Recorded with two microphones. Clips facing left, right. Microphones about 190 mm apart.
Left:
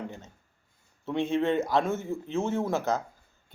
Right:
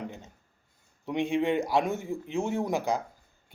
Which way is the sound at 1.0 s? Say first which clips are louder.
Even; 15° right (ahead or behind).